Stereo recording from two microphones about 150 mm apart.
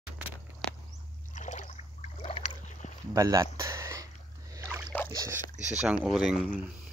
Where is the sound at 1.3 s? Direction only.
55° left (ahead or behind).